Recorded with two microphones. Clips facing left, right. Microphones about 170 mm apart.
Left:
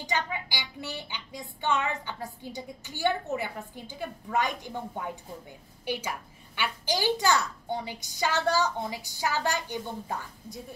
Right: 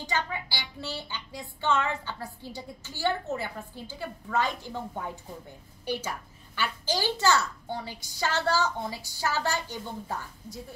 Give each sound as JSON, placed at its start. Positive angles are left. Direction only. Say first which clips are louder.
{"t": 0.0, "sound": "speech", "louder": "even", "side_deg": 15}
{"t": 6.6, "sound": "speech", "louder": "left 1 dB", "side_deg": 15}